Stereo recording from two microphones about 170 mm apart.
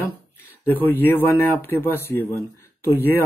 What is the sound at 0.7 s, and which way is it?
Speech, 10° left (ahead or behind).